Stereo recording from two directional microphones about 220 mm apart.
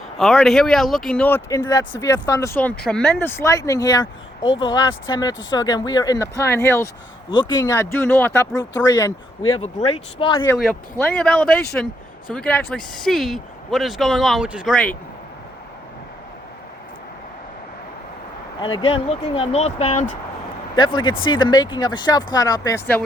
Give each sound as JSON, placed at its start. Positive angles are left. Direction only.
{"t": 0.2, "sound": "speech", "side_deg": 0}
{"t": 5.3, "sound": "speech", "side_deg": 60}
{"t": 5.5, "sound": "speech", "side_deg": 20}
{"t": 9.6, "sound": "speech", "side_deg": 25}
{"t": 11.0, "sound": "speech", "side_deg": 5}
{"t": 18.6, "sound": "speech", "side_deg": 20}